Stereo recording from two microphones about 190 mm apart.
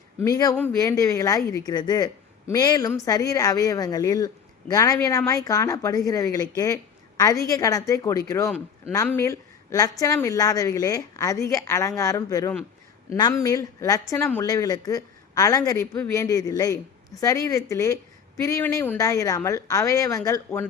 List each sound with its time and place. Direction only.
0.2 s a woman's voice: 20° left (ahead or behind)
7.5 s a woman's voice: 15° left (ahead or behind)